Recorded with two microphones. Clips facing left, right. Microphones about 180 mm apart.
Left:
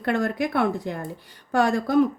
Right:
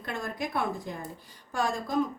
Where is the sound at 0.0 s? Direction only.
70° left (ahead or behind).